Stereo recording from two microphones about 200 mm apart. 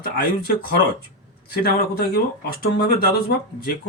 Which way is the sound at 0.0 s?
45° left (ahead or behind).